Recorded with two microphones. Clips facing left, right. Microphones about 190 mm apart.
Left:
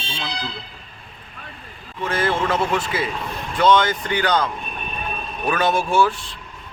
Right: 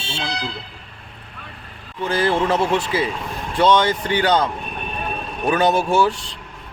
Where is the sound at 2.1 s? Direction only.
30° right (ahead or behind).